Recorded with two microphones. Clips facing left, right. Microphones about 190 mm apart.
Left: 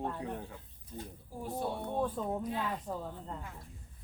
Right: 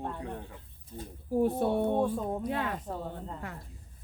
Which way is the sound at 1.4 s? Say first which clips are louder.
Right 10 dB; 60° right (ahead or behind).